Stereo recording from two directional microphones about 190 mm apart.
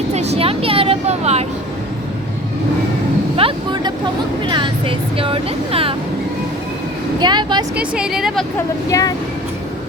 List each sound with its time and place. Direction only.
0.1 s vehicle: 35° right (ahead or behind)
3.3 s a sound: 25° right (ahead or behind)
4.4 s speech: 25° right (ahead or behind)
7.2 s speech: 25° right (ahead or behind)
7.8 s a woman's voice: 5° right (ahead or behind)
8.9 s speech: 15° left (ahead or behind)